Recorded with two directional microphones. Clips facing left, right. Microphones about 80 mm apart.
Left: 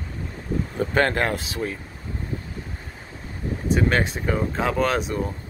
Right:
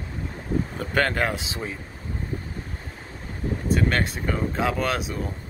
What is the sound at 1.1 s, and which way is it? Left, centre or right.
Speech, centre.